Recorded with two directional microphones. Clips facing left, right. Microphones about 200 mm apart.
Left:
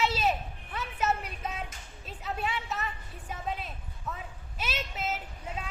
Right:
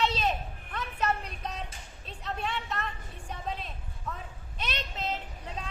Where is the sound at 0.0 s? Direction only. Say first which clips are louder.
Left 1 dB; 5° left (ahead or behind).